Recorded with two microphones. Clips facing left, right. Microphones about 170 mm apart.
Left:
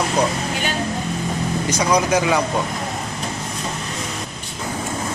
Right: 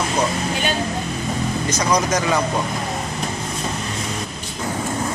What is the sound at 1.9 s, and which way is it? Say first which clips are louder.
Speech: left 2 dB; 10° left (ahead or behind).